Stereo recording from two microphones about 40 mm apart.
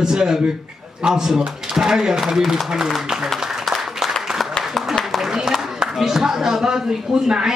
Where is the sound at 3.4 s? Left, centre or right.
Centre.